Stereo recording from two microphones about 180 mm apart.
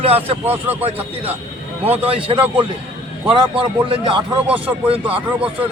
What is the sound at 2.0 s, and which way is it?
A man's voice, 30° right (ahead or behind).